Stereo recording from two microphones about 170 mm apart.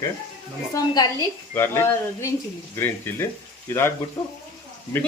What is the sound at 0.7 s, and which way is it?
A woman's voice, 25° left (ahead or behind).